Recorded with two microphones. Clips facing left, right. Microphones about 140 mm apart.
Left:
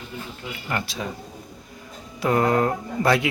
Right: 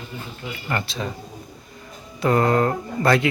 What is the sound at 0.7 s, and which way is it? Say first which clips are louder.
Speech: right 1 dB; 10° left (ahead or behind).